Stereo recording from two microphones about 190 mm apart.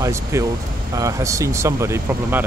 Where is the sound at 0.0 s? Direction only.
15° right (ahead or behind).